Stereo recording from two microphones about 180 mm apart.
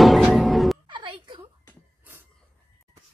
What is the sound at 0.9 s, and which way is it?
Music, 25° right (ahead or behind).